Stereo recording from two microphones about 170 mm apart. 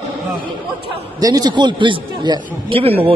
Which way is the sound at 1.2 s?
25° right (ahead or behind).